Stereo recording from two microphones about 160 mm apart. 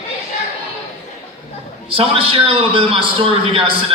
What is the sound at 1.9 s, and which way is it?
A man's voice, 35° right (ahead or behind).